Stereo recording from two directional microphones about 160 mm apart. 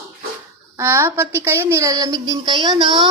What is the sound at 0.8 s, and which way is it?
A woman's voice, 15° right (ahead or behind).